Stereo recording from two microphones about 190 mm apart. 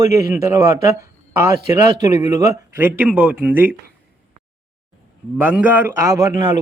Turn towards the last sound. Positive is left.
turn(degrees=-15)  # may be behind; listen again after turning